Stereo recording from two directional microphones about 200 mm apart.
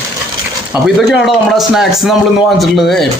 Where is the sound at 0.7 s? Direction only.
Centre (ahead or behind).